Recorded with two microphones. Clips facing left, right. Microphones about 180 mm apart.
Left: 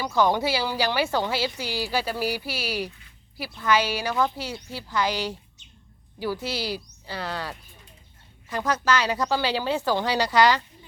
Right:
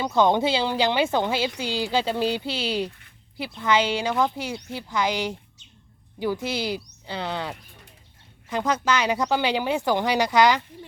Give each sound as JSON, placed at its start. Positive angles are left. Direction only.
{"t": 0.0, "sound": "speech", "side_deg": -20}
{"t": 6.4, "sound": "speech", "side_deg": -20}